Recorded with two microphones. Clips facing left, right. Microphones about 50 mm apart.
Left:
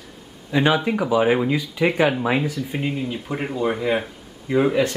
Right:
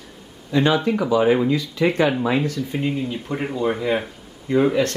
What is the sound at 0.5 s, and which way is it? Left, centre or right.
Speech, centre.